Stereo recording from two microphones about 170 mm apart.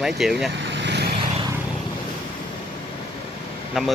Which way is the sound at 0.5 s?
90° right.